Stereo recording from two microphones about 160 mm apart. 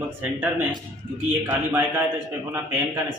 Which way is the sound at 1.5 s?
15° right (ahead or behind).